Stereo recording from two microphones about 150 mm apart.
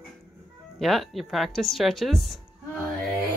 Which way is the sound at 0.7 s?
Centre (ahead or behind).